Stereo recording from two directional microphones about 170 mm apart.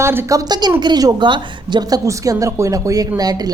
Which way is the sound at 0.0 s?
15° right (ahead or behind).